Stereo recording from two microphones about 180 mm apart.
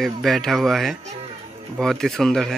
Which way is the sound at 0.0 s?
Centre (ahead or behind).